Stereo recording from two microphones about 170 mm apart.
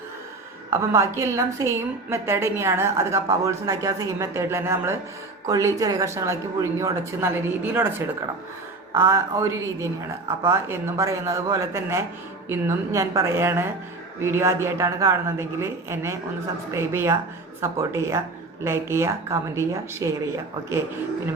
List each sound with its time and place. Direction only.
0.7 s a woman's voice: 15° right (ahead or behind)